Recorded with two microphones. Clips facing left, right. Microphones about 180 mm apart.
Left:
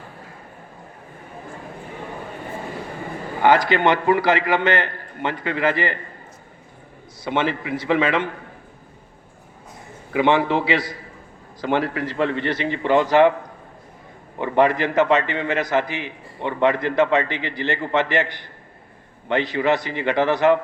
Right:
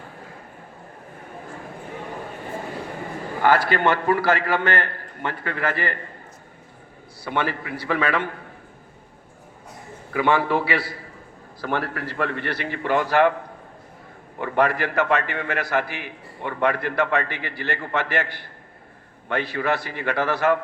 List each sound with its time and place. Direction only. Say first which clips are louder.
3.4 s a man's voice: left 3 dB; 15° left (ahead or behind)
7.3 s a man's voice: left 3 dB; 20° left (ahead or behind)
10.1 s a man's voice: left 2 dB; 20° left (ahead or behind)
14.4 s a man's voice: left 3 dB; 20° left (ahead or behind)